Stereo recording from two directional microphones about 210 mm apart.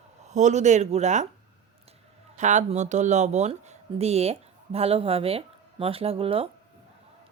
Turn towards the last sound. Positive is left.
turn(degrees=-25)  # may be behind; listen again after turning